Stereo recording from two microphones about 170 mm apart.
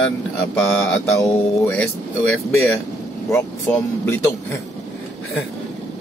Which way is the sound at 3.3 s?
15° left (ahead or behind).